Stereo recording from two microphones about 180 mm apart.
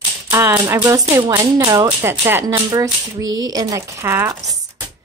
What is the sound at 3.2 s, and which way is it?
Speech, 90° right.